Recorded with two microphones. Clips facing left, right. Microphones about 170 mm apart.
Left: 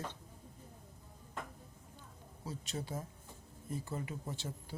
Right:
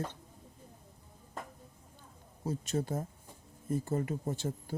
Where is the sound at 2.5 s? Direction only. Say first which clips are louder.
Right 8 dB; 45° right (ahead or behind).